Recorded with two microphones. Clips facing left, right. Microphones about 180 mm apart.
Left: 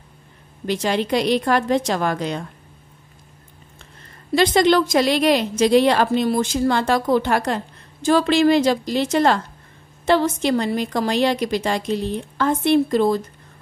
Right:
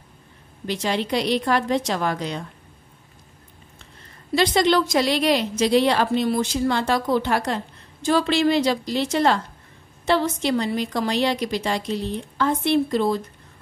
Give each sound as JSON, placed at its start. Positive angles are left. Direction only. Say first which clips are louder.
{"t": 0.7, "sound": "a woman's voice", "louder": "left 3 dB", "side_deg": 50}
{"t": 4.4, "sound": "a woman's voice", "louder": "left 3 dB", "side_deg": 50}